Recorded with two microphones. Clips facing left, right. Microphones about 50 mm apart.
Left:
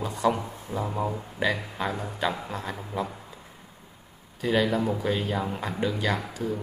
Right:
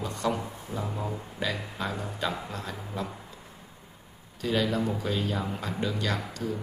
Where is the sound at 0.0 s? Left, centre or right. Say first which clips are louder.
Left 4 dB; centre.